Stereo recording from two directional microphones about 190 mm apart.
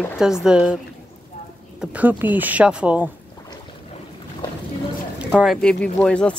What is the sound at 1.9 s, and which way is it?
Speech, 10° right (ahead or behind).